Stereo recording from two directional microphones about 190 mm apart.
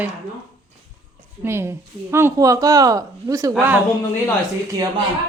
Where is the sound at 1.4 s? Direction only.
15° right (ahead or behind).